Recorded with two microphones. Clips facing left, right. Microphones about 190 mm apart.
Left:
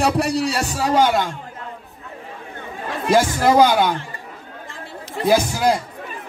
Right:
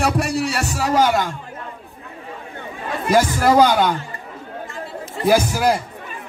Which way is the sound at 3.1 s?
15° left (ahead or behind).